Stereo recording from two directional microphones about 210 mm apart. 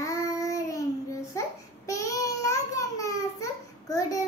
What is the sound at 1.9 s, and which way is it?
Child singing, 15° left (ahead or behind).